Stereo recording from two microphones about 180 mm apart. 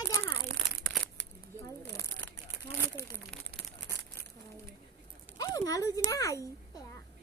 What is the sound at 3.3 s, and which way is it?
Crumpling, 5° left (ahead or behind).